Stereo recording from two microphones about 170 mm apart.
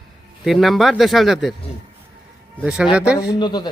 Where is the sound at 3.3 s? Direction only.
25° left (ahead or behind).